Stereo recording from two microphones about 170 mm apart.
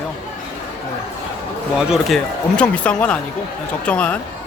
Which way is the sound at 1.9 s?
5° left (ahead or behind).